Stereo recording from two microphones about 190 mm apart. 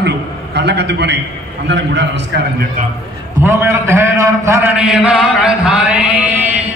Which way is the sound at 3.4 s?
15° right (ahead or behind).